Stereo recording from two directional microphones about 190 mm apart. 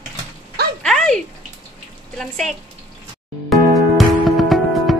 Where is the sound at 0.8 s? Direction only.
Centre (ahead or behind).